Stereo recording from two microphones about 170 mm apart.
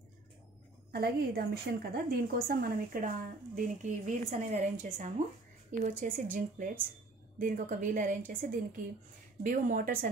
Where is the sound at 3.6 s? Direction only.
45° right (ahead or behind).